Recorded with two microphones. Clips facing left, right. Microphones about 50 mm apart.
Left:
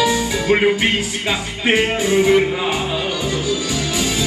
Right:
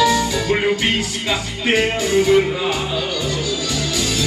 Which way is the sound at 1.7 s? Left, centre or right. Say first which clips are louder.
Left 1 dB; centre.